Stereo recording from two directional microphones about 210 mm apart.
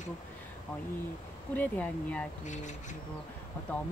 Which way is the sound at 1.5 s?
5° left (ahead or behind).